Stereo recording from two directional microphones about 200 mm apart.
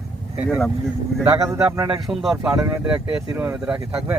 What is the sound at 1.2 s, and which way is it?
Speech, 15° right (ahead or behind).